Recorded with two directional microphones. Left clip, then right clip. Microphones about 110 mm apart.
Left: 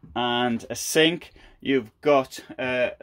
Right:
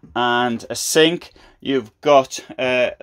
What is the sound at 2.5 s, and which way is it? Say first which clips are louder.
Speech: right 7 dB; 55° right (ahead or behind).